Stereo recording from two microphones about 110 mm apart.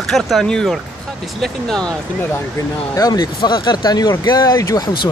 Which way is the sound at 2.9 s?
35° left (ahead or behind).